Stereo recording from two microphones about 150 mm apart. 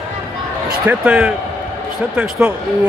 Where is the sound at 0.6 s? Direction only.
5° right (ahead or behind).